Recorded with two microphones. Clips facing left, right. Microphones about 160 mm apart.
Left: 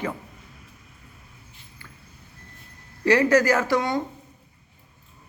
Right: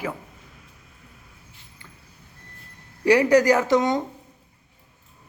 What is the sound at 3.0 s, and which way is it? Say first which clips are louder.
Speech: right 2 dB; 15° right (ahead or behind).